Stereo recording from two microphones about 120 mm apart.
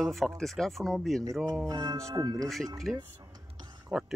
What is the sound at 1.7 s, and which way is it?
Speech, 35° right (ahead or behind).